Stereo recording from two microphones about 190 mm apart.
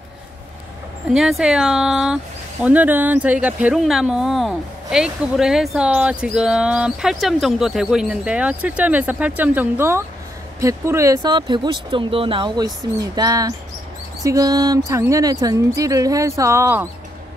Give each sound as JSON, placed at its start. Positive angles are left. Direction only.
{"t": 1.1, "sound": "speech", "side_deg": 0}